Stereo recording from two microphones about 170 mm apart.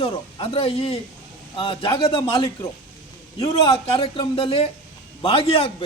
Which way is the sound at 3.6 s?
35° left (ahead or behind).